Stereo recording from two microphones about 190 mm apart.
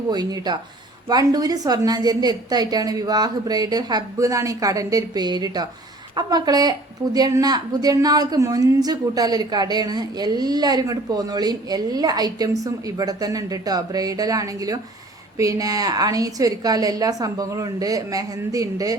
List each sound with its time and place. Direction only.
0.1 s a woman's voice: 20° right (ahead or behind)